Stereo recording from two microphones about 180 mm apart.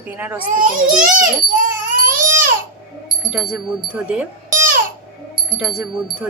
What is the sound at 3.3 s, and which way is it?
Speech, centre (ahead or behind).